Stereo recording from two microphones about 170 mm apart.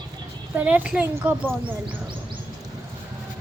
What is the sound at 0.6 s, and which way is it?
Speech, 10° right (ahead or behind).